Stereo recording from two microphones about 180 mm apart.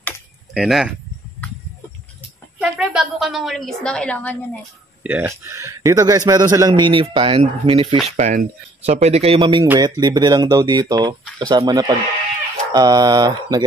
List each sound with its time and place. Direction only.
0.6 s speech: 5° right (ahead or behind)
2.6 s a woman's voice: 5° right (ahead or behind)
5.0 s a man's voice: 10° right (ahead or behind); by 8.0 s 30° right (ahead or behind)
8.2 s a man's voice: 45° right (ahead or behind); by 13.7 s 25° right (ahead or behind)